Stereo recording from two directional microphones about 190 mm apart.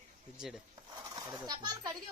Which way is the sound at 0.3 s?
Centre (ahead or behind).